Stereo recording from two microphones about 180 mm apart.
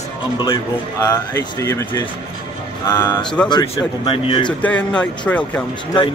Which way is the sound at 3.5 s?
25° left (ahead or behind).